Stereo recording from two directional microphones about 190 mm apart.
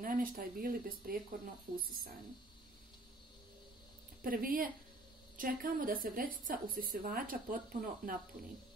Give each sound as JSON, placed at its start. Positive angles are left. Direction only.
{"t": 0.0, "sound": "a woman's voice", "side_deg": -45}
{"t": 4.2, "sound": "a woman's voice", "side_deg": -45}